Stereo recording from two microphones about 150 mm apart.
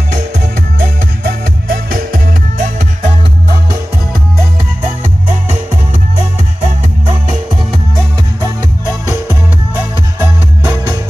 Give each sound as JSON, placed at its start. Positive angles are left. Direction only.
{"t": 0.7, "sound": "music", "side_deg": -75}